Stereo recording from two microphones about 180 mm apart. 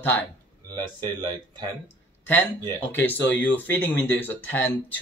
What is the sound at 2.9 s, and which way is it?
Speech, 10° left (ahead or behind).